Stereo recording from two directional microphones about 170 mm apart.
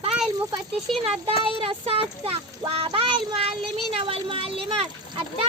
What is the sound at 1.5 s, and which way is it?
A woman's voice, 35° right (ahead or behind).